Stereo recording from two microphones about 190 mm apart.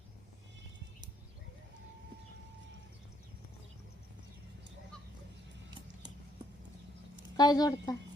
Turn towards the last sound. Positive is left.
turn(degrees=20)  # may be behind; listen again after turning